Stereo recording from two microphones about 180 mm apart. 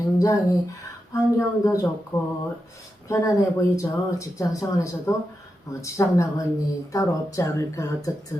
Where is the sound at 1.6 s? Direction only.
20° left (ahead or behind).